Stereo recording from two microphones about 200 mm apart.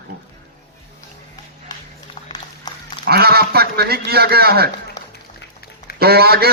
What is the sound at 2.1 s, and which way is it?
Dog, 20° left (ahead or behind).